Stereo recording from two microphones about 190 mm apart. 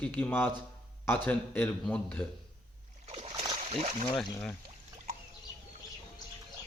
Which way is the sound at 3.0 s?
35° right (ahead or behind).